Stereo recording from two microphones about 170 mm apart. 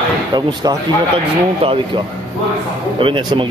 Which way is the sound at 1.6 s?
30° right (ahead or behind).